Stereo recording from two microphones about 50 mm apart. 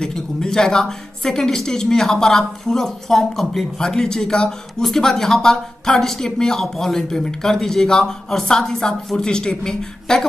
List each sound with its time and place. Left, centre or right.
0.0 s speech: centre